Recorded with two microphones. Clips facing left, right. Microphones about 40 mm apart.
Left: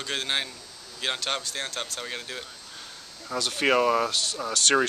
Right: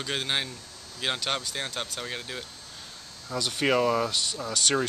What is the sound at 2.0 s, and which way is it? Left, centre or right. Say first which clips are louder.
Speech: even; centre.